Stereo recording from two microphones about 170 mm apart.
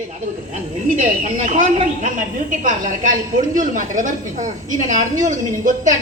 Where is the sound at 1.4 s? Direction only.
45° right (ahead or behind).